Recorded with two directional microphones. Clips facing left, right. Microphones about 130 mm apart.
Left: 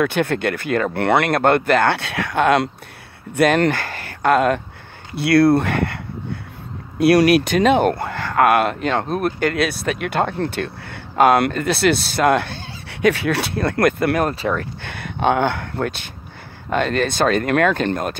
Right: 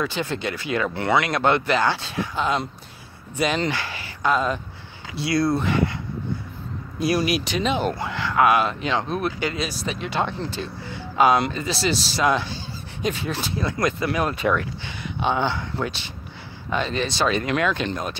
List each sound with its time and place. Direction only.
0.0 s speech: 60° left (ahead or behind)
3.3 s speech: 60° left (ahead or behind)
7.0 s speech: 65° left (ahead or behind)
14.3 s speech: 35° left (ahead or behind)
14.8 s speech: 55° left (ahead or behind)